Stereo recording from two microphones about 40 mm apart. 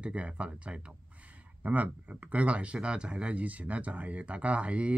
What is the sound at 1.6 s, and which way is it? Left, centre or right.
Speech, right.